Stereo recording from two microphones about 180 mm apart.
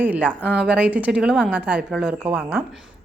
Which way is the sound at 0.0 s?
10° right (ahead or behind).